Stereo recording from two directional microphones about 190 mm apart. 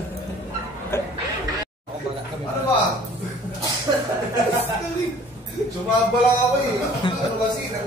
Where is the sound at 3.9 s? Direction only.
25° right (ahead or behind).